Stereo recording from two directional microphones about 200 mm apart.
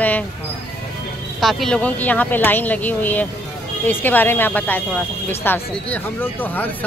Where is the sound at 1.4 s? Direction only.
Centre (ahead or behind).